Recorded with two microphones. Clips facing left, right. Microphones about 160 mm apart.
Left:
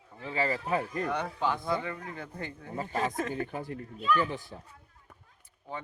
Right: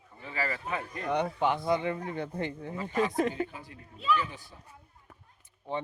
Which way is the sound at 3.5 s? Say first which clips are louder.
Left 9 dB; 50° left (ahead or behind).